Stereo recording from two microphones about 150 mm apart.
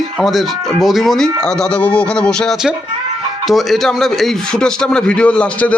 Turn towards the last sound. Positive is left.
turn(degrees=10)  # may be behind; listen again after turning